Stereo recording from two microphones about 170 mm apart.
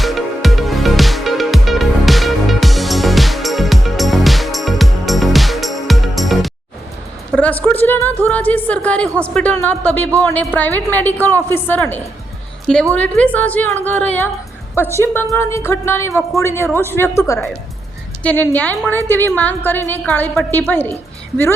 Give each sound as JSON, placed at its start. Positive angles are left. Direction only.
{"t": 0.0, "sound": "music", "side_deg": 0}
{"t": 7.3, "sound": "a sound", "side_deg": 10}
{"t": 9.2, "sound": "a woman's voice", "side_deg": 5}